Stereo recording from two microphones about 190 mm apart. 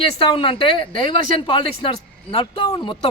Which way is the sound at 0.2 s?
25° left (ahead or behind).